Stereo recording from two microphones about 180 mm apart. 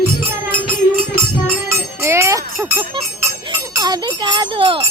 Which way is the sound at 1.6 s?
15° right (ahead or behind).